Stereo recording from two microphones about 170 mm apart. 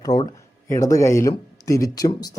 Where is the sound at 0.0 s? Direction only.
25° left (ahead or behind).